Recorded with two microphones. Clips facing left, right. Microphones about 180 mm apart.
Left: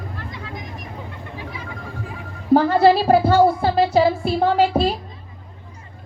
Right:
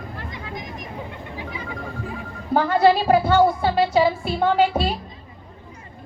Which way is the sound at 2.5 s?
35° left (ahead or behind).